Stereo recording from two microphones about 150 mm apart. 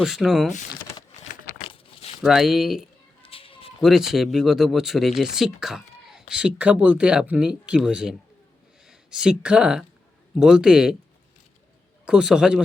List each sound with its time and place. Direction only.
0.0 s speech: 5° right (ahead or behind)
1.6 s crumpling: 40° left (ahead or behind)
2.2 s speech: centre (ahead or behind)
3.2 s a sound: 35° left (ahead or behind)
3.8 s speech: centre (ahead or behind)
12.0 s speech: 5° right (ahead or behind)